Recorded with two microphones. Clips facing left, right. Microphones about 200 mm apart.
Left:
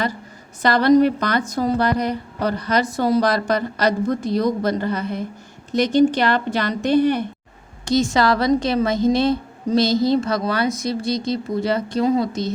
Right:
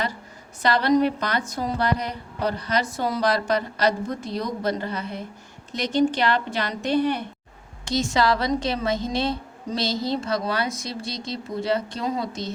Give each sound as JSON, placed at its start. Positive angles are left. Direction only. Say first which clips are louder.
{"t": 0.6, "sound": "a woman's voice", "louder": "left 5 dB", "side_deg": 45}